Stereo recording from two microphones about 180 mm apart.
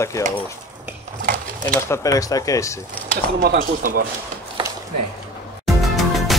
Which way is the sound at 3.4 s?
55° right (ahead or behind).